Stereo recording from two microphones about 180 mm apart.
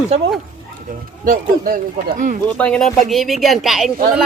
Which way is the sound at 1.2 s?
50° right (ahead or behind).